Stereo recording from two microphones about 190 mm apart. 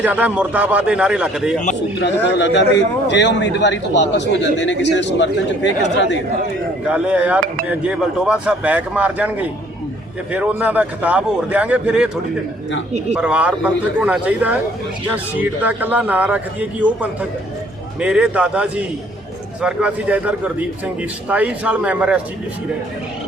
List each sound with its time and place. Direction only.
0.0 s a man's voice: 10° right (ahead or behind)
2.2 s a man's voice: 65° left (ahead or behind)
6.9 s a man's voice: 5° right (ahead or behind)
13.1 s a man's voice: 5° right (ahead or behind)